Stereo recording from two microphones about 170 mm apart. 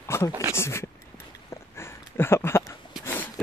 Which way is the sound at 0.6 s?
15° left (ahead or behind).